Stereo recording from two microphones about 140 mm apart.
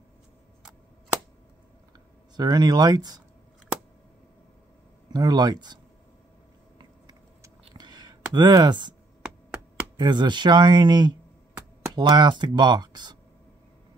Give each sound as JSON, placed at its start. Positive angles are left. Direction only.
{"t": 2.3, "sound": "speech", "side_deg": -30}
{"t": 5.1, "sound": "speech", "side_deg": -30}
{"t": 6.8, "sound": "vehicle", "side_deg": -30}
{"t": 7.7, "sound": "a sound", "side_deg": -30}
{"t": 8.3, "sound": "speech", "side_deg": -30}
{"t": 9.9, "sound": "speech", "side_deg": -30}